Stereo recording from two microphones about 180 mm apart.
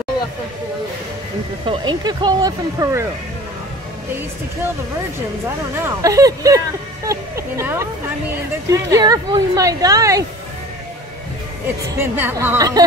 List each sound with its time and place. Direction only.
1.7 s speech: 25° right (ahead or behind)
5.9 s a woman's voice: 20° right (ahead or behind)
8.9 s speech: 20° right (ahead or behind)
11.6 s a woman's voice: 10° right (ahead or behind)